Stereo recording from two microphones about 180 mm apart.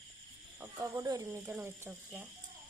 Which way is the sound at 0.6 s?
15° right (ahead or behind).